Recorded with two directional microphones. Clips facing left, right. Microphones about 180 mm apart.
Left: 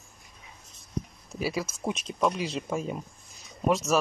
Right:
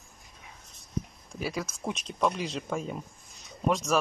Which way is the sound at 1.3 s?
5° left (ahead or behind).